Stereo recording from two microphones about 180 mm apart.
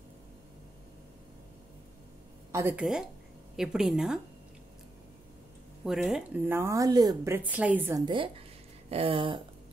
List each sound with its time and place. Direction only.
2.5 s a woman's voice: 10° right (ahead or behind)
5.9 s a woman's voice: 5° right (ahead or behind)
8.0 s a sound: 25° right (ahead or behind)